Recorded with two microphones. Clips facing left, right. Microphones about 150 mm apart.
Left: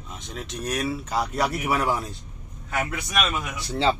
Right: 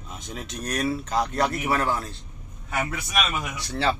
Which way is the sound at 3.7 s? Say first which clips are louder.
Left 2 dB; 20° left (ahead or behind).